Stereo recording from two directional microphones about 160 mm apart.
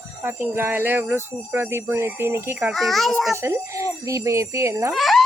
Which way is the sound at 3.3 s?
15° right (ahead or behind).